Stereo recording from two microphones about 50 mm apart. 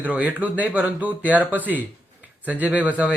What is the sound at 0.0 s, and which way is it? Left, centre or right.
Speech, right.